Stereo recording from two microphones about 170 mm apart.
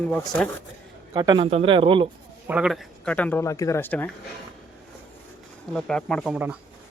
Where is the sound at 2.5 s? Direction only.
5° right (ahead or behind).